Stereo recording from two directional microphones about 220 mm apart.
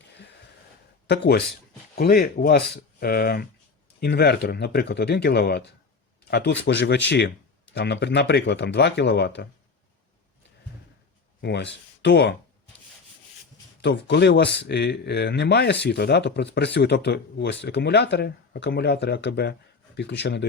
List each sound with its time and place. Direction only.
1.0 s speech: 50° left (ahead or behind)
11.4 s speech: 50° left (ahead or behind)
13.8 s speech: 50° left (ahead or behind)